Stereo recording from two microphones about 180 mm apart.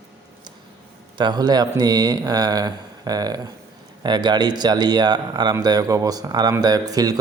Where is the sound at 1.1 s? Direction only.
25° right (ahead or behind).